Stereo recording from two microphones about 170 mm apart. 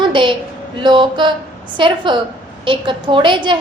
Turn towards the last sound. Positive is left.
turn(degrees=-30)  # may be behind; listen again after turning